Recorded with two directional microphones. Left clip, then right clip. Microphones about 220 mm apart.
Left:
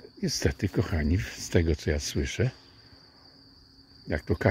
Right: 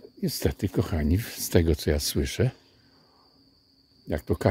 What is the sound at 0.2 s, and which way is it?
Speech, 10° right (ahead or behind).